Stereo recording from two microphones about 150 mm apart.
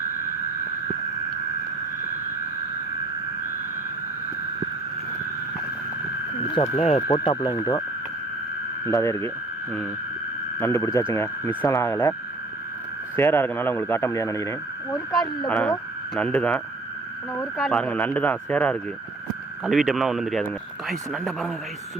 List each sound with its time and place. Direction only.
6.7 s speech: 45° left (ahead or behind)
7.1 s speech: 25° left (ahead or behind)
8.9 s speech: 20° left (ahead or behind)
10.6 s speech: 20° left (ahead or behind)
13.1 s speech: 15° left (ahead or behind)
15.4 s speech: 5° left (ahead or behind)
17.6 s speech: 5° left (ahead or behind)